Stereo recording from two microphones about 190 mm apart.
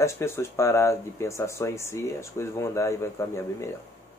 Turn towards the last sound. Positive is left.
turn(degrees=15)  # may be behind; listen again after turning